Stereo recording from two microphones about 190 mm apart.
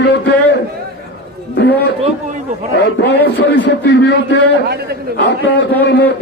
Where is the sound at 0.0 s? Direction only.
65° left (ahead or behind).